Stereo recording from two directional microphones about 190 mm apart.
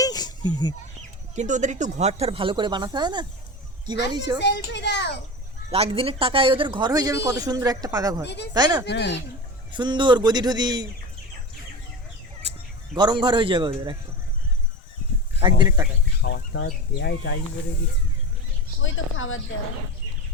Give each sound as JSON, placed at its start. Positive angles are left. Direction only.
{"t": 0.0, "sound": "a sound", "side_deg": 20}
{"t": 1.4, "sound": "speech", "side_deg": -40}
{"t": 4.4, "sound": "speech", "side_deg": 65}
{"t": 5.7, "sound": "speech", "side_deg": -30}
{"t": 8.2, "sound": "speech", "side_deg": 65}
{"t": 8.5, "sound": "speech", "side_deg": -20}
{"t": 8.8, "sound": "speech", "side_deg": 65}
{"t": 9.7, "sound": "speech", "side_deg": -25}
{"t": 13.0, "sound": "speech", "side_deg": -25}
{"t": 15.4, "sound": "speech", "side_deg": -25}
{"t": 16.2, "sound": "speech", "side_deg": 65}
{"t": 18.8, "sound": "speech", "side_deg": 90}